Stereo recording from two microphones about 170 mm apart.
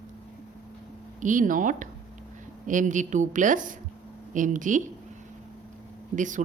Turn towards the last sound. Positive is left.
turn(degrees=-50)  # may be behind; listen again after turning